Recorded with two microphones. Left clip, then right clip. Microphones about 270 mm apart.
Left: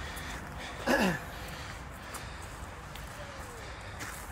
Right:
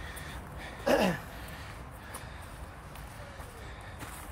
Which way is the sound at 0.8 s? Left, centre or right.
Right.